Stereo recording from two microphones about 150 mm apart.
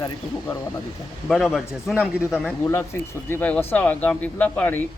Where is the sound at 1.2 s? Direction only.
Centre (ahead or behind).